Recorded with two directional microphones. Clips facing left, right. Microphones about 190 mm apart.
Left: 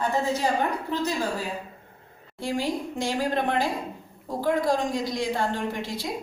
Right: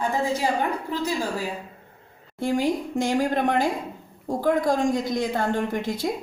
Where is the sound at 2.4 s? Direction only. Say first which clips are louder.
Right 4 dB; 50° right (ahead or behind).